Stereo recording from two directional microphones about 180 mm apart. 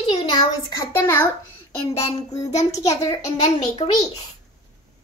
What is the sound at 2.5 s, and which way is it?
Speech, 40° left (ahead or behind).